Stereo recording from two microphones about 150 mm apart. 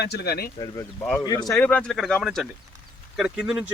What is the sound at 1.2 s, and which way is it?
Speech, 25° left (ahead or behind).